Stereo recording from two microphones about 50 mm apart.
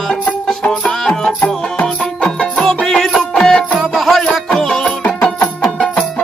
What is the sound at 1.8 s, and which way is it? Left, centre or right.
Music, left.